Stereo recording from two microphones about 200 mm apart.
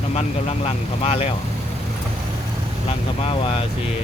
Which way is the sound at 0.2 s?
30° left (ahead or behind).